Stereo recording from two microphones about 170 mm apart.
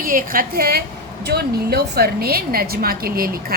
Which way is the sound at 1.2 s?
70° right (ahead or behind).